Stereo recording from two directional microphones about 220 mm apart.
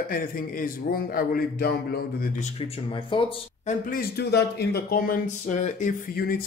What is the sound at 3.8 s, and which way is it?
Speech, 45° left (ahead or behind).